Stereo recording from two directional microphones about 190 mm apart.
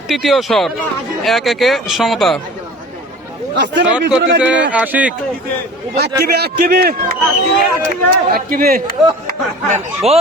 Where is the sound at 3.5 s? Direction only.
65° right (ahead or behind).